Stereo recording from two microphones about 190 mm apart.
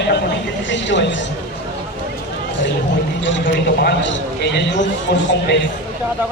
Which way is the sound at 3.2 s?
75° left (ahead or behind).